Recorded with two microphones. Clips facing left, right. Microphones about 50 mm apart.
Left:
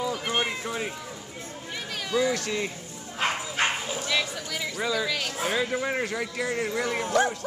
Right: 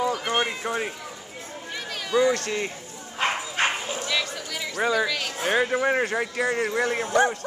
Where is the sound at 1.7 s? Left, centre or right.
Centre.